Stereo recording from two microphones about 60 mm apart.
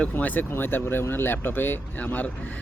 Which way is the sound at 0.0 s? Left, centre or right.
Left.